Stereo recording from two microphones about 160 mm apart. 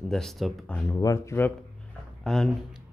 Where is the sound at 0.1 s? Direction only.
Centre (ahead or behind).